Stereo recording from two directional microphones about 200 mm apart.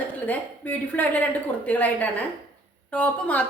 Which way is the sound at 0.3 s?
10° left (ahead or behind).